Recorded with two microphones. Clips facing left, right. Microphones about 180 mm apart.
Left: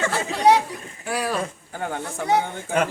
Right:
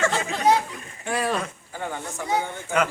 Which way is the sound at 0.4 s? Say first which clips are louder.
Left 3 dB; 70° left (ahead or behind).